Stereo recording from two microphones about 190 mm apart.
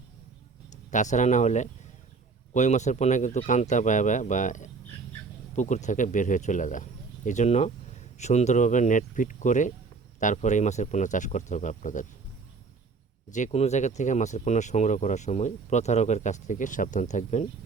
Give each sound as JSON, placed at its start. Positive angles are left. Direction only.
{"t": 0.9, "sound": "speech", "side_deg": 40}
{"t": 13.3, "sound": "speech", "side_deg": 35}